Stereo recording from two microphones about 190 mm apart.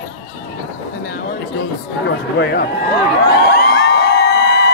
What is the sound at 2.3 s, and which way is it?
Run, 60° left (ahead or behind).